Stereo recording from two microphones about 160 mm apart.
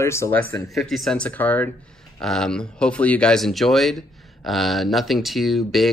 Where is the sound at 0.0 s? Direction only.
15° left (ahead or behind).